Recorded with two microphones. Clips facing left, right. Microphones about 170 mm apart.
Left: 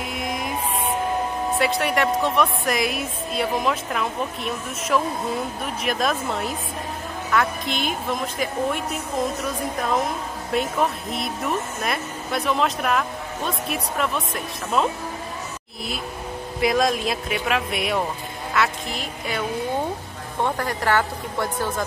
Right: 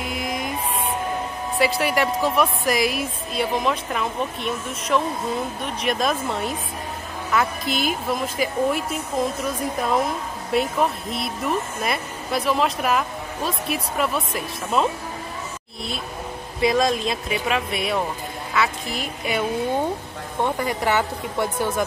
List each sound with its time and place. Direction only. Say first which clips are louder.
0.0 s music: right 1 dB; centre (ahead or behind)
1.5 s a woman's voice: right 2 dB; centre (ahead or behind)
10.5 s a woman's voice: right 1 dB; centre (ahead or behind)
16.6 s a woman's voice: right 1 dB; centre (ahead or behind)
20.4 s a woman's voice: right 1 dB; 15° right (ahead or behind)